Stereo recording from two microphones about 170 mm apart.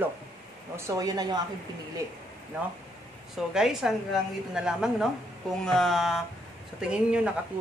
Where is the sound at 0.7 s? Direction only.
20° right (ahead or behind).